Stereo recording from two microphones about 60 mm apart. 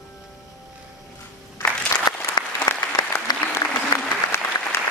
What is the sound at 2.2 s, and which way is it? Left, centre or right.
Applause, left.